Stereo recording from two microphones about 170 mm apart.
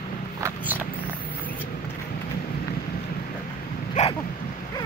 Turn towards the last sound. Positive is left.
turn(degrees=45)  # may be behind; listen again after turning